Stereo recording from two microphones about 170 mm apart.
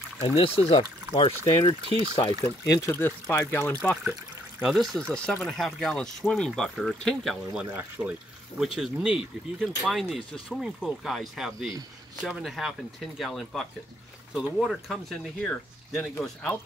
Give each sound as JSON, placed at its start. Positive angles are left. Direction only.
{"t": 0.7, "sound": "speech", "side_deg": 35}
{"t": 2.4, "sound": "speech", "side_deg": 15}
{"t": 4.6, "sound": "speech", "side_deg": 0}
{"t": 7.7, "sound": "speech", "side_deg": -10}